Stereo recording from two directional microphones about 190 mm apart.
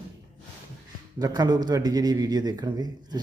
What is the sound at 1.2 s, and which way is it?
Speech, 20° right (ahead or behind).